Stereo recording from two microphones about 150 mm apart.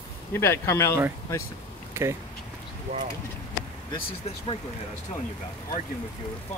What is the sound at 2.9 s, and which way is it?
Speech, 45° right (ahead or behind).